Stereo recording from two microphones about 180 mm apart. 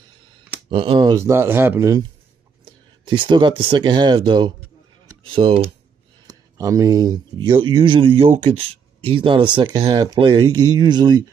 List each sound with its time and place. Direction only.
0.7 s speech: 25° right (ahead or behind)
6.2 s speech: 20° right (ahead or behind)